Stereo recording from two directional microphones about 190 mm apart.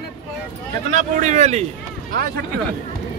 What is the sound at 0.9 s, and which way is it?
Speech, 40° right (ahead or behind).